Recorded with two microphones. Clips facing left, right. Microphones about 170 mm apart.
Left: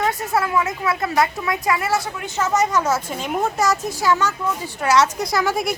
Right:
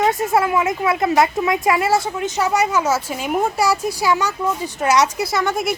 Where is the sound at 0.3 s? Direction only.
25° right (ahead or behind).